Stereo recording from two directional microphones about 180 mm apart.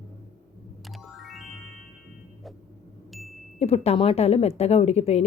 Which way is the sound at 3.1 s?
Centre (ahead or behind).